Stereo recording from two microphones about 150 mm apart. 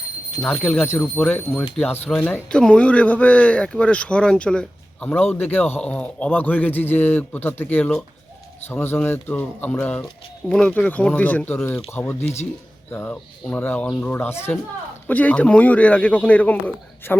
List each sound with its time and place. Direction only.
0.4 s speech: 10° left (ahead or behind)